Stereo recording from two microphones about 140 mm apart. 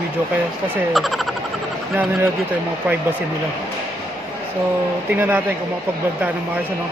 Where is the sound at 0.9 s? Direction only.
Centre (ahead or behind).